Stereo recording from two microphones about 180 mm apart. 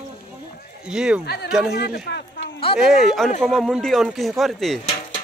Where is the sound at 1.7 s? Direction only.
65° left (ahead or behind).